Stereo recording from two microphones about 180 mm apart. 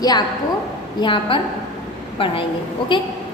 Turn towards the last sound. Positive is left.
turn(degrees=25)  # may be behind; listen again after turning